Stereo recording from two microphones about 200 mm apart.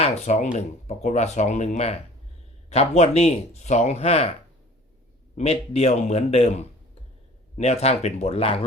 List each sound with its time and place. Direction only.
0.0 s speech: 35° left (ahead or behind)
5.4 s speech: 30° left (ahead or behind)